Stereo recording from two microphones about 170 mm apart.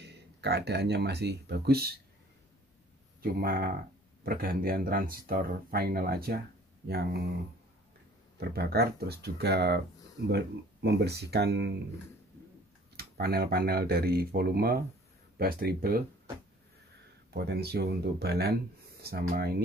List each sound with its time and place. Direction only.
0.0 s speech: 75° right (ahead or behind)
3.2 s speech: 60° right (ahead or behind)
8.4 s speech: 65° right (ahead or behind)
12.9 s speech: 65° right (ahead or behind)
17.3 s speech: 70° right (ahead or behind)